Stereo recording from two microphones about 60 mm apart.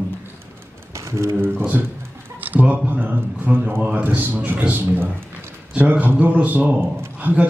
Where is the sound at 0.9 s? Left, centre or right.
Right.